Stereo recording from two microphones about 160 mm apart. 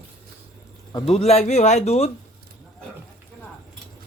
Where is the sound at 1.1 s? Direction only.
40° left (ahead or behind).